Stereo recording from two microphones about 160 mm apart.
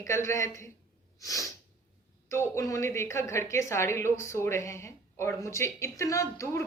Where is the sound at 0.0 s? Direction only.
20° left (ahead or behind).